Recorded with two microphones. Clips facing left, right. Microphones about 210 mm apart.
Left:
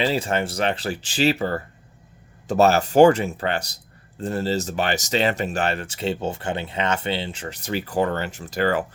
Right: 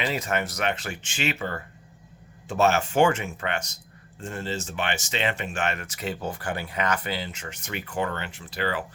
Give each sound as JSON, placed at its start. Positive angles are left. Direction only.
{"t": 0.0, "sound": "speech", "side_deg": 30}